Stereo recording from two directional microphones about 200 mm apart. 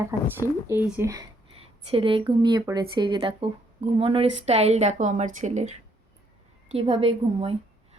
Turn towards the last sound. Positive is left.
turn(degrees=-30)  # may be behind; listen again after turning